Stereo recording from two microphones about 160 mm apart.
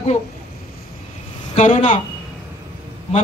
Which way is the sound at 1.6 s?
40° left (ahead or behind).